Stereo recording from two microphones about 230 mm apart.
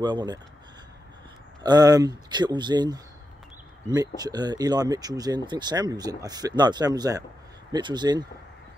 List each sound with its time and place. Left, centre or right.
0.0 s speech: centre
1.6 s speech: centre